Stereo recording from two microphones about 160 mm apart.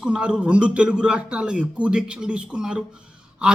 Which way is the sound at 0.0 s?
5° right (ahead or behind).